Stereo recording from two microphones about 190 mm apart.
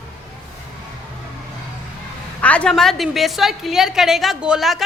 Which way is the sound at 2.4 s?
5° left (ahead or behind).